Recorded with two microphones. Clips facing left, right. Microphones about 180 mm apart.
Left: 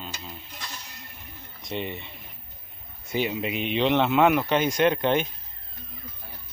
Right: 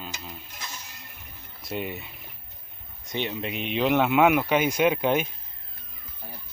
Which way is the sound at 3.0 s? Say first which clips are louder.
Left 3 dB; 10° left (ahead or behind).